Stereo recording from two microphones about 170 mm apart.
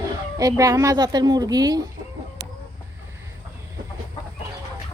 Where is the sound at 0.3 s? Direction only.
20° right (ahead or behind).